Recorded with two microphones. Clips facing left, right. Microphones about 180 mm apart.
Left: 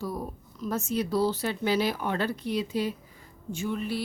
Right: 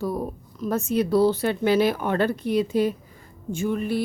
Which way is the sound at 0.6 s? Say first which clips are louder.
Right 6 dB; 55° right (ahead or behind).